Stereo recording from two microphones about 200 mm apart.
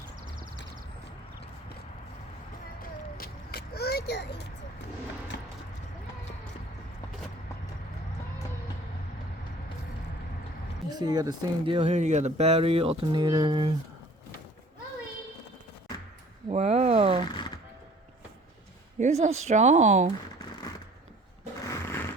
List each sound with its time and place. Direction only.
2.8 s vehicle: 50° left (ahead or behind)
5.3 s clip-clop: 55° left (ahead or behind)
10.8 s speech: 20° right (ahead or behind)
16.5 s a sound: 35° right (ahead or behind)
18.9 s speech: 35° right (ahead or behind)
21.6 s snoring: 15° left (ahead or behind)